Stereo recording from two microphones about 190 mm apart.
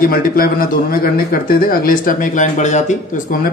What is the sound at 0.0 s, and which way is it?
Speech, 50° left (ahead or behind).